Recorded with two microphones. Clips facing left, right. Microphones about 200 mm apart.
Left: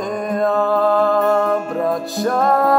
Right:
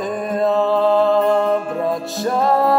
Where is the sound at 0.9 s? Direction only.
25° right (ahead or behind).